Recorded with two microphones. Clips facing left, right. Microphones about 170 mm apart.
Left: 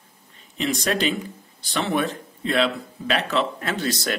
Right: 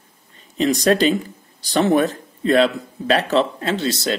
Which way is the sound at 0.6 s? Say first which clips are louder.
Right 7 dB; 35° right (ahead or behind).